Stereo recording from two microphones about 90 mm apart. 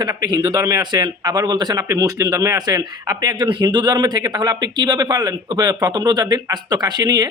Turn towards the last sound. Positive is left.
turn(degrees=-45)  # may be behind; listen again after turning